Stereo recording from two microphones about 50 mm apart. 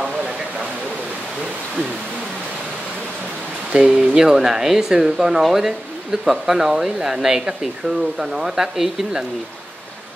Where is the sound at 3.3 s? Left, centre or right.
Left.